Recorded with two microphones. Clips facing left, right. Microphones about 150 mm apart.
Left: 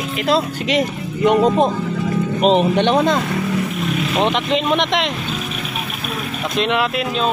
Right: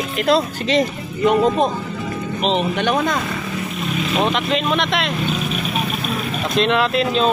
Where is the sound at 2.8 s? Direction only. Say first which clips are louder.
Left 3 dB; 25° left (ahead or behind).